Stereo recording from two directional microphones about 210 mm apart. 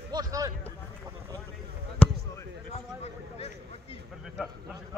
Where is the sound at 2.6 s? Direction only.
30° left (ahead or behind).